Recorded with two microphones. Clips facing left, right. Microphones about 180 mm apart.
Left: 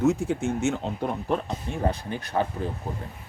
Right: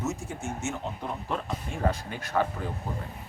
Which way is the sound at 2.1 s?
30° left (ahead or behind).